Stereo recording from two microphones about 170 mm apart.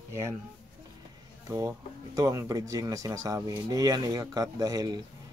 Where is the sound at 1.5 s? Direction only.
20° right (ahead or behind).